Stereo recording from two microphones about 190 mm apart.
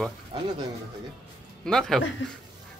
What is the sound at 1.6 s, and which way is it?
Speech, 5° left (ahead or behind).